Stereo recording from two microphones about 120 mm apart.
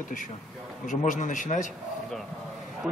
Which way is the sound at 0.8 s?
90° left.